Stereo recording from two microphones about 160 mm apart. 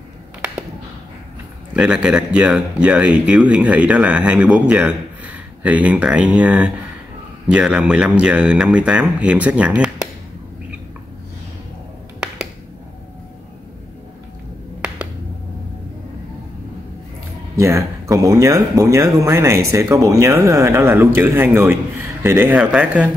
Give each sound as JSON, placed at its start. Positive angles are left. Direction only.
{"t": 1.7, "sound": "speech", "side_deg": -5}
{"t": 17.6, "sound": "speech", "side_deg": -20}